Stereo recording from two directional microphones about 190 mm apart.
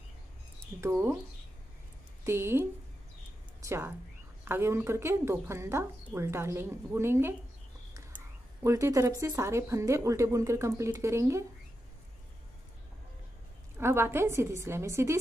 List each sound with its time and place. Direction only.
0.6 s speech: 15° right (ahead or behind)
2.2 s speech: 15° right (ahead or behind)
8.6 s speech: 15° right (ahead or behind)
13.7 s speech: 15° right (ahead or behind)